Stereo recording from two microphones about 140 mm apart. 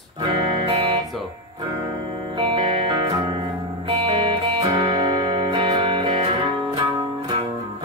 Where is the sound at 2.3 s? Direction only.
40° right (ahead or behind).